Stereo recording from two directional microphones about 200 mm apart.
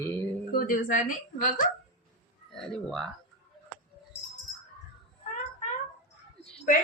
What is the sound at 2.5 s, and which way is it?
Speech, centre (ahead or behind).